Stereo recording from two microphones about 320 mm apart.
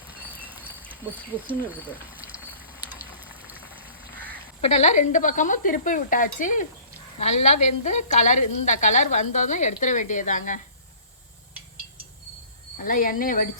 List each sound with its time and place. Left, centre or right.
0.2 s a sound: centre
2.9 s boiling: centre
4.6 s speech: centre
12.7 s speech: left